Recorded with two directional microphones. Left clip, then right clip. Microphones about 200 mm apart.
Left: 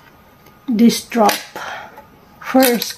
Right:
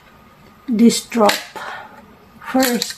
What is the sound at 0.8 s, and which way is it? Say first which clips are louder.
Speech: even; 15° left (ahead or behind).